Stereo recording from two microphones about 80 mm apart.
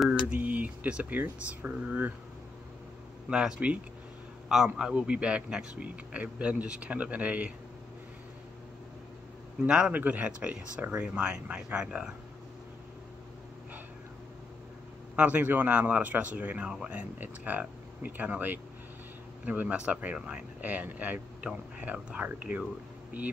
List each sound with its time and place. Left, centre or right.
0.3 s speech: centre
3.3 s a man's voice: centre
4.7 s a man's voice: centre
9.6 s a man's voice: centre
15.1 s speech: centre